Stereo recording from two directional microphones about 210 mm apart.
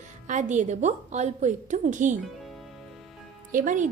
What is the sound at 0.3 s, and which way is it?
Speech, 35° right (ahead or behind).